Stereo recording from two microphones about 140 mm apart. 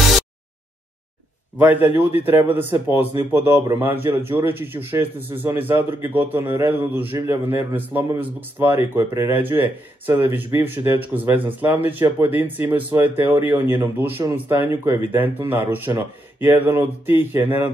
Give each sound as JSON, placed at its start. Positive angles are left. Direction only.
{"t": 1.6, "sound": "speech", "side_deg": -10}